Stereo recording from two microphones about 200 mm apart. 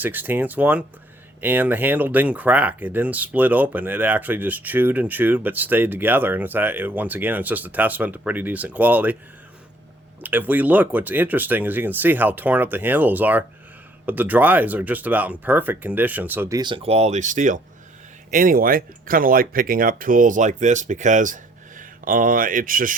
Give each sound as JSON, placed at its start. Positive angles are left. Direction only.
{"t": 0.0, "sound": "speech", "side_deg": -10}
{"t": 10.2, "sound": "speech", "side_deg": -10}